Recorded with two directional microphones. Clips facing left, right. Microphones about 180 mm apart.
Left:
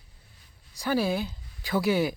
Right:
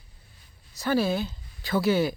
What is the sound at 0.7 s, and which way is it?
Speech, 10° left (ahead or behind).